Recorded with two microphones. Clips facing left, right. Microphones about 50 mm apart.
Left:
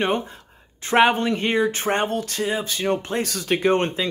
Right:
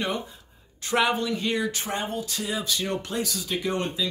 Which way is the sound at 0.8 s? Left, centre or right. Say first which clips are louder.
Left 6 dB; left.